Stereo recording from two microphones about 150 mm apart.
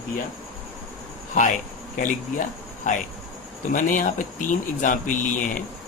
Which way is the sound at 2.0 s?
60° left (ahead or behind).